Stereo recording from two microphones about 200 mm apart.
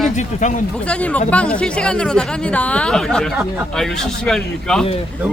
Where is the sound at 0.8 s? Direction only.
5° left (ahead or behind).